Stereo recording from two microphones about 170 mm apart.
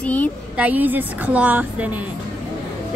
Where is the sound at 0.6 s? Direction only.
10° right (ahead or behind).